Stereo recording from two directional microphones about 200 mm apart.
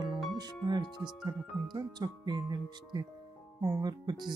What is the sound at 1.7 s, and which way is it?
Speech, 20° right (ahead or behind).